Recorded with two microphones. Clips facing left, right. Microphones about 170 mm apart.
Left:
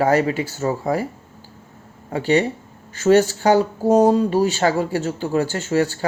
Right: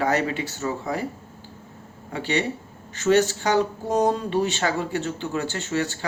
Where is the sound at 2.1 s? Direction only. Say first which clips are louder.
Left 7 dB; 40° left (ahead or behind).